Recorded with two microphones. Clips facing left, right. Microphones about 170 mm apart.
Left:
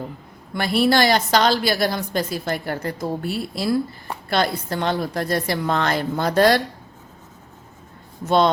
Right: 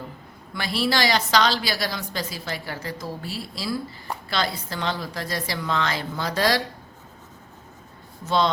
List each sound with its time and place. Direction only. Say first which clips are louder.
0.5 s a woman's voice: left 6 dB; 55° left (ahead or behind)